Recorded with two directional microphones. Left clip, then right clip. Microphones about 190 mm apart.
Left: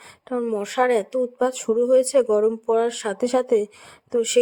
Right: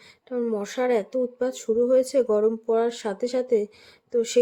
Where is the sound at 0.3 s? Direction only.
30° left (ahead or behind).